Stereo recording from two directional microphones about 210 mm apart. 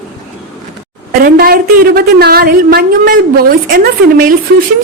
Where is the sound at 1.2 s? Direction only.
45° right (ahead or behind).